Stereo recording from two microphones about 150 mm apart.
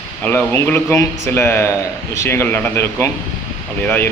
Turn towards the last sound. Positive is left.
turn(degrees=15)  # may be behind; listen again after turning